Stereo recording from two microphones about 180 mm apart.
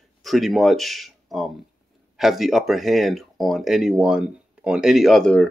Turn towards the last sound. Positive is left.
turn(degrees=5)  # may be behind; listen again after turning